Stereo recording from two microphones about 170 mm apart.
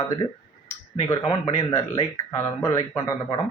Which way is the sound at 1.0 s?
15° left (ahead or behind).